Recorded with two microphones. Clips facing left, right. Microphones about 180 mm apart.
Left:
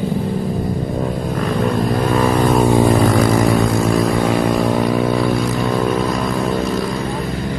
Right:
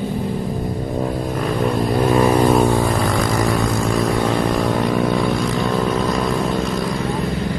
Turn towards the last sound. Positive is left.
turn(degrees=5)  # may be behind; listen again after turning